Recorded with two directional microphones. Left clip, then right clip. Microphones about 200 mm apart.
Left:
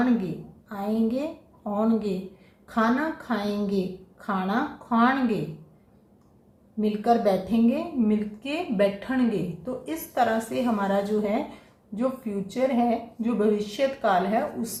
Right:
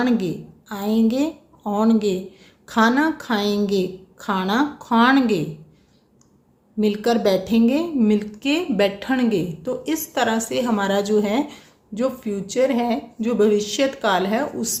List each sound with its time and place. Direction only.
0.7 s a woman's voice: 55° right (ahead or behind)
6.7 s a woman's voice: 50° right (ahead or behind)